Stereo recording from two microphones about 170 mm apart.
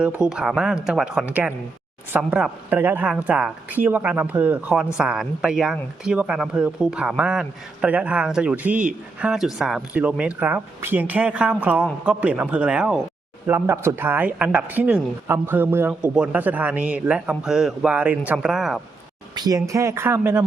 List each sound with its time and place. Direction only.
0.0 s speech: 5° right (ahead or behind)
19.3 s speech: 20° right (ahead or behind)